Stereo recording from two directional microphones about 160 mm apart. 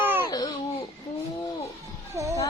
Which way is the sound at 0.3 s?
25° left (ahead or behind).